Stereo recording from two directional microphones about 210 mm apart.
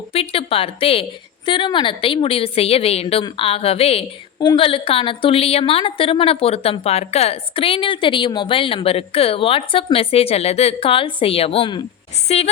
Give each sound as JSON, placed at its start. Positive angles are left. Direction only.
{"t": 0.1, "sound": "a woman's voice", "side_deg": 25}